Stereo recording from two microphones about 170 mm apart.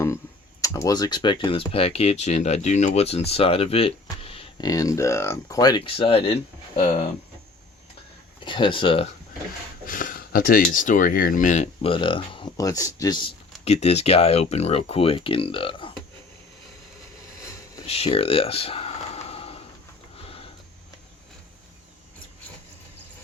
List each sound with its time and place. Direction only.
0.6 s speech: 20° left (ahead or behind); by 6.9 s 35° left (ahead or behind)
8.4 s speech: 30° left (ahead or behind)
9.8 s speech: 55° left (ahead or behind); by 13.3 s 25° left (ahead or behind)
13.7 s speech: 40° left (ahead or behind)
17.8 s a sound: 35° left (ahead or behind)
20.2 s sniff: 35° left (ahead or behind)